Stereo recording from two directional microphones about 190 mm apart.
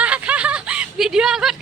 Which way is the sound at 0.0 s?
5° right (ahead or behind).